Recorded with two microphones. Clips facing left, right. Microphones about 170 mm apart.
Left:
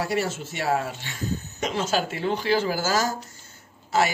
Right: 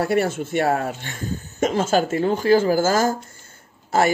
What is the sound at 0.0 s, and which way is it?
Speech, 55° right (ahead or behind).